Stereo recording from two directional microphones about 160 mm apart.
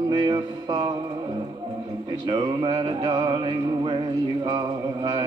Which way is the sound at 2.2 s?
30° right (ahead or behind).